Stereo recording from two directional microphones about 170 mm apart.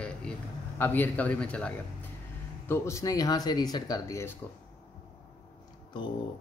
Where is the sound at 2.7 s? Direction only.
15° left (ahead or behind).